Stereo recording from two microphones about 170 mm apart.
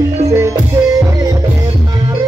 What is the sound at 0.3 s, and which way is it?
Music, 20° right (ahead or behind).